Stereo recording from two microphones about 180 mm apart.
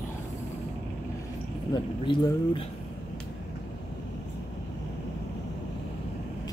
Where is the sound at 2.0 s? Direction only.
25° left (ahead or behind).